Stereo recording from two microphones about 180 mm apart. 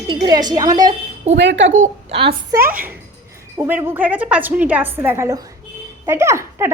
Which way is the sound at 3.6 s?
10° right (ahead or behind).